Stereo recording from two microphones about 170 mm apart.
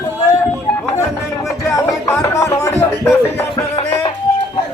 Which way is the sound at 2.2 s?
20° left (ahead or behind).